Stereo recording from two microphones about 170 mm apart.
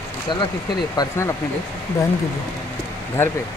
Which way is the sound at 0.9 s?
15° left (ahead or behind).